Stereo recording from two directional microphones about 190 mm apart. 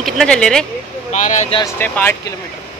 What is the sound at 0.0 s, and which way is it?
Speech, centre (ahead or behind).